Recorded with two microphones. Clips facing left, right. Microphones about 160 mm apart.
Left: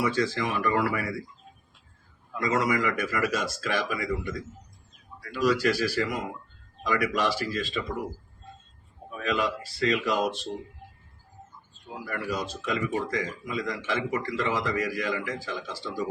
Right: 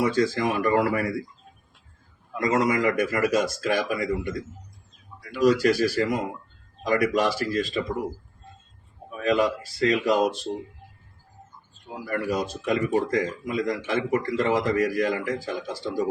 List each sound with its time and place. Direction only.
0.0 s speech: 45° right (ahead or behind)
2.4 s speech: 45° right (ahead or behind)
5.4 s speech: 45° right (ahead or behind)
9.2 s speech: 40° right (ahead or behind)
12.1 s speech: 50° right (ahead or behind)